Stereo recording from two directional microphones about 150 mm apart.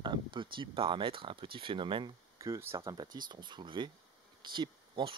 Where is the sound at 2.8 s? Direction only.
30° right (ahead or behind).